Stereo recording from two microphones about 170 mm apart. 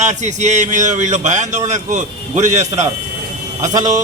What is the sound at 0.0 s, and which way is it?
A man's voice, 45° right (ahead or behind).